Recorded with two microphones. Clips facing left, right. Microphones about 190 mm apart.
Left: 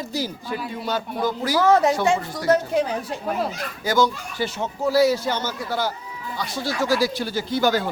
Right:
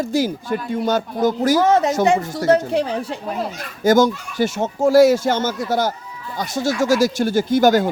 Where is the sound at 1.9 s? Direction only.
45° right (ahead or behind).